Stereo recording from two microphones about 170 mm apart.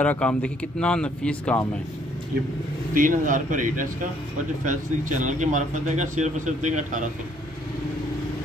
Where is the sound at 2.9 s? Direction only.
50° right (ahead or behind).